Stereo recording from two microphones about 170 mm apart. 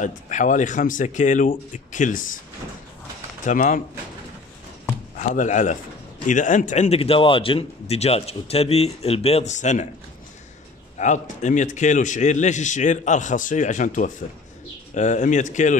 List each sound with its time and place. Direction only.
0.0 s a man's voice: 45° left (ahead or behind)
3.4 s a man's voice: 50° left (ahead or behind)
5.1 s speech: 45° left (ahead or behind)
11.0 s a man's voice: 45° left (ahead or behind)